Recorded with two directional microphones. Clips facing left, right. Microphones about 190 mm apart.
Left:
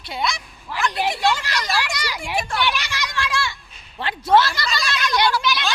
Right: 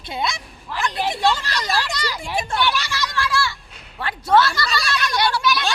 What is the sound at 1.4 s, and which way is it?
Children playing, 15° left (ahead or behind).